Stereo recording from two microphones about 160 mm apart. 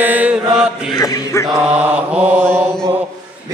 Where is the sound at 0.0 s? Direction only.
10° right (ahead or behind).